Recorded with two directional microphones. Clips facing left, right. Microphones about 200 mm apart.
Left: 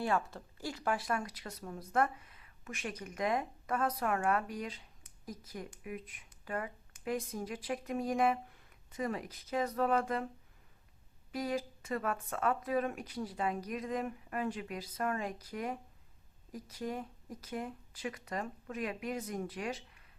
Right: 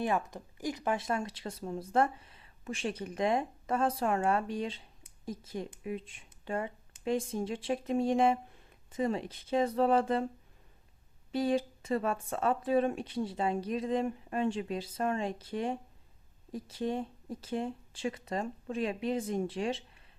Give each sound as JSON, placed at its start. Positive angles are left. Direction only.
{"t": 0.0, "sound": "speech", "side_deg": -20}
{"t": 11.3, "sound": "speech", "side_deg": -25}